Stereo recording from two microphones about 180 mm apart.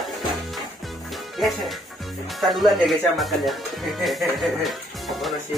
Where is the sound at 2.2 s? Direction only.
Centre (ahead or behind).